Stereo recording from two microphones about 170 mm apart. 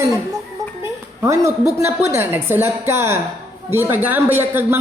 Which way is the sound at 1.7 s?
15° right (ahead or behind).